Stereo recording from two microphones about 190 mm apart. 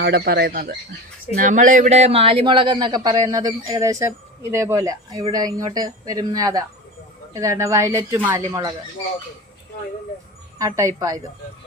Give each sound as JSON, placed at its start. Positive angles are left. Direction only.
{"t": 0.0, "sound": "a man's voice", "side_deg": -60}
{"t": 10.6, "sound": "speech", "side_deg": -15}